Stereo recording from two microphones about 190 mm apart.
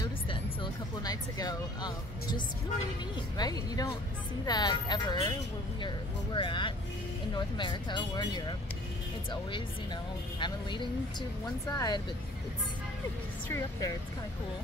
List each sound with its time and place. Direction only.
0.0 s music: 25° left (ahead or behind)
3.3 s speech: 20° left (ahead or behind)
10.4 s speech: 25° left (ahead or behind)
13.5 s speech: 15° left (ahead or behind)